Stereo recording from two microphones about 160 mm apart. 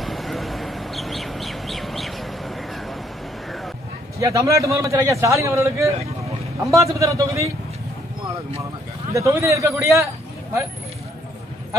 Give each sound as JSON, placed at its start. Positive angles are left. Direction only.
{"t": 0.0, "sound": "bird", "side_deg": 0}
{"t": 4.2, "sound": "a man's voice", "side_deg": -20}
{"t": 9.1, "sound": "a man's voice", "side_deg": -20}